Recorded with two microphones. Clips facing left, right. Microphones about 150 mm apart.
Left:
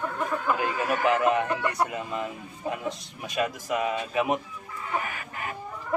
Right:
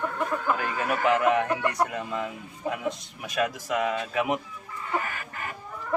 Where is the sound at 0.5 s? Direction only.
20° left (ahead or behind).